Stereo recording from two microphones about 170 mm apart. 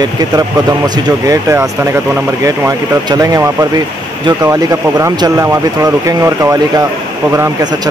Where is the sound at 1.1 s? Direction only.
20° right (ahead or behind).